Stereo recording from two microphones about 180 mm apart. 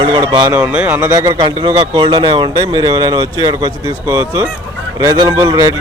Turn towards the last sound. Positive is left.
turn(degrees=-20)  # may be behind; listen again after turning